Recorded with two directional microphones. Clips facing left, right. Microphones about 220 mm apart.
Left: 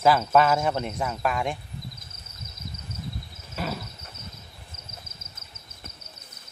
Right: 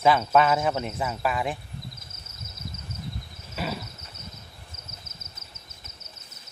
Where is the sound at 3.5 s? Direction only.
5° right (ahead or behind).